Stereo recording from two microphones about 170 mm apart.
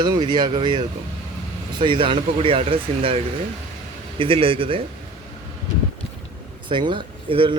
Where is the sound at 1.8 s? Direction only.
30° right (ahead or behind).